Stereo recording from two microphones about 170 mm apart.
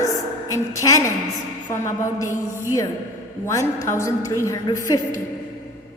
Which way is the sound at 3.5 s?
20° left (ahead or behind).